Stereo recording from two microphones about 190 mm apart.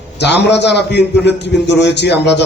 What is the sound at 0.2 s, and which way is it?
A man's voice, 65° left (ahead or behind).